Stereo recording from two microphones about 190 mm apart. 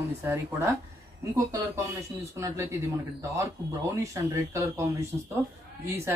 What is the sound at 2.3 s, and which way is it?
Speech, 15° right (ahead or behind).